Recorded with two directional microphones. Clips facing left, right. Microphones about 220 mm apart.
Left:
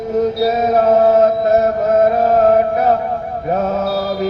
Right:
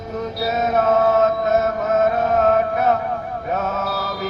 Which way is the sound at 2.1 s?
35° left (ahead or behind).